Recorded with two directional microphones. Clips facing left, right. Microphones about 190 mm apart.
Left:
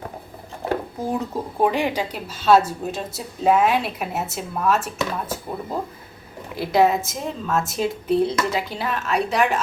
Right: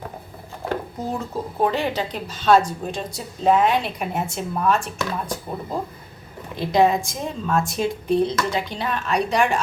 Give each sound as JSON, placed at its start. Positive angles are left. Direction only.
{"t": 1.3, "sound": "speech", "side_deg": 15}
{"t": 6.6, "sound": "speech", "side_deg": 5}